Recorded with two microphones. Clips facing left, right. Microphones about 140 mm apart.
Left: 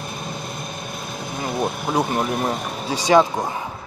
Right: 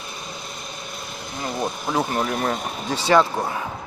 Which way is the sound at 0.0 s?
50° left (ahead or behind).